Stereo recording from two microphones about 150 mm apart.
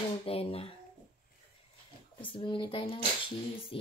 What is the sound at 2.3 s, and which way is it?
Speech, 35° left (ahead or behind).